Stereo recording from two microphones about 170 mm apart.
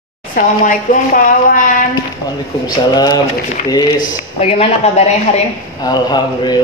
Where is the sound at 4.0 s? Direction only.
35° left (ahead or behind).